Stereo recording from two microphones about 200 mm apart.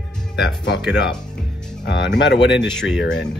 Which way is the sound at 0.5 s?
60° left (ahead or behind).